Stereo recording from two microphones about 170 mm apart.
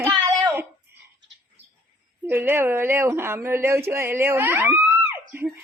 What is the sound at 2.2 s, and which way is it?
Speech, 10° right (ahead or behind).